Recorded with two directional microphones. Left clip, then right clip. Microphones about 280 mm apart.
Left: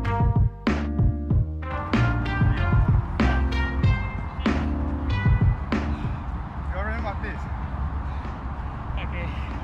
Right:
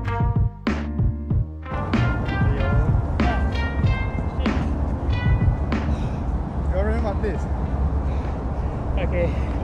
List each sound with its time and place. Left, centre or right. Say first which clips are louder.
0.7 s music: even; centre
1.9 s music: even; left
3.2 s music: right 1 dB; left
4.4 s music: even; centre